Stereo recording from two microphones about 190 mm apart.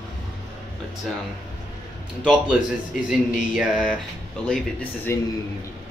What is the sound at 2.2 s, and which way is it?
Speech, 5° right (ahead or behind).